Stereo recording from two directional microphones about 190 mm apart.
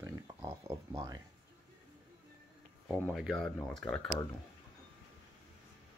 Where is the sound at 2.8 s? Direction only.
5° left (ahead or behind).